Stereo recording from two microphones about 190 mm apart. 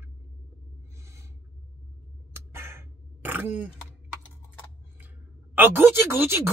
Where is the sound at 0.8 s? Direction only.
15° right (ahead or behind).